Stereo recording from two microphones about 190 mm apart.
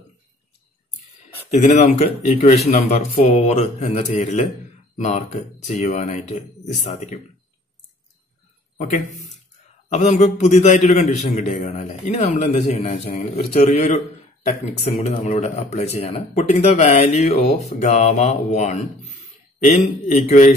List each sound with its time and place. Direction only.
1.5 s a man's voice: 35° left (ahead or behind)
8.7 s a man's voice: 40° left (ahead or behind)